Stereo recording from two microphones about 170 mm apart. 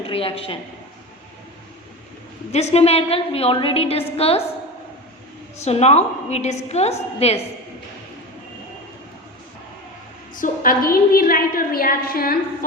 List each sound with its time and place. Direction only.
0.1 s a woman's voice: 35° left (ahead or behind)
2.5 s a woman's voice: 40° left (ahead or behind)
5.6 s a woman's voice: 40° left (ahead or behind)
10.3 s a woman's voice: 50° left (ahead or behind)